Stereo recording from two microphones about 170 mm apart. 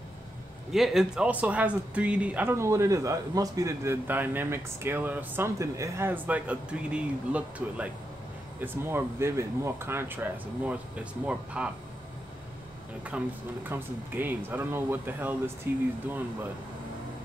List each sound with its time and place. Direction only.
0.7 s speech: centre (ahead or behind)
13.1 s speech: 10° right (ahead or behind)